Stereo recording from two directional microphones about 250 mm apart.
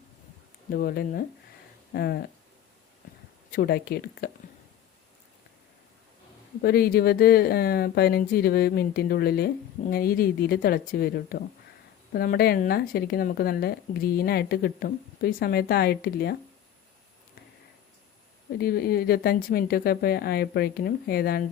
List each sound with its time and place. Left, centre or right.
0.7 s a woman's voice: left
3.5 s a woman's voice: left
6.6 s a woman's voice: left
18.6 s a woman's voice: left